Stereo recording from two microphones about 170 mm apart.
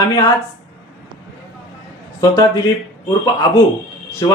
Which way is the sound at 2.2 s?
20° left (ahead or behind).